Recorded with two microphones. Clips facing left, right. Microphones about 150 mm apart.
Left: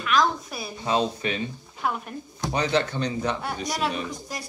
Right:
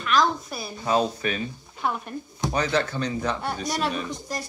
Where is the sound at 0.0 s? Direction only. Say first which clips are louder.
Even; centre (ahead or behind).